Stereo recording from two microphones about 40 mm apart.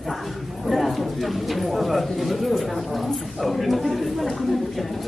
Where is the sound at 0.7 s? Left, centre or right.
Centre.